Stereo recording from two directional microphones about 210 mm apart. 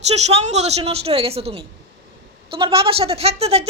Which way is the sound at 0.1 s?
30° right (ahead or behind).